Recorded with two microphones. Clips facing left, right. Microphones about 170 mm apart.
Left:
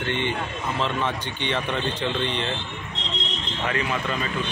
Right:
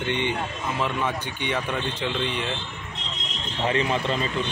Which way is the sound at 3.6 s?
30° right (ahead or behind).